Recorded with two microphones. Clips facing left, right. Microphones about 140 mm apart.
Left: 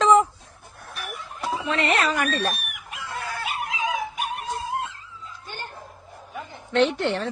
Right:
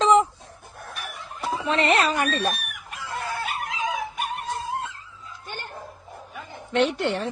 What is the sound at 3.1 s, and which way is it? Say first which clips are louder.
Dog: right 2 dB; 25° right (ahead or behind).